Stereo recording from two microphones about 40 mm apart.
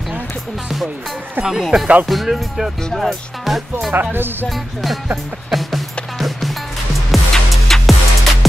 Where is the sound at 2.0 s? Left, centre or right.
Centre.